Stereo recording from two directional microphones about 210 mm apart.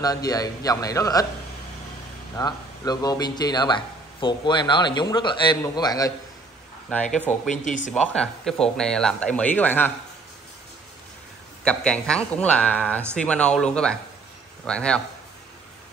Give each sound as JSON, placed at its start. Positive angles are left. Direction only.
{"t": 0.0, "sound": "a man's voice", "side_deg": 15}
{"t": 2.3, "sound": "speech", "side_deg": 20}
{"t": 6.9, "sound": "speech", "side_deg": 5}
{"t": 7.6, "sound": "speech", "side_deg": 35}
{"t": 7.9, "sound": "speech", "side_deg": 5}
{"t": 11.6, "sound": "speech", "side_deg": 5}
{"t": 14.7, "sound": "speech", "side_deg": 5}